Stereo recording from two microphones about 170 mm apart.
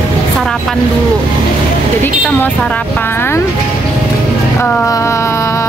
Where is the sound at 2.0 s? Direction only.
10° left (ahead or behind).